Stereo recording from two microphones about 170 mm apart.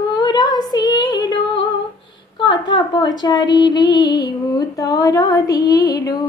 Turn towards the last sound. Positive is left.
turn(degrees=20)  # may be behind; listen again after turning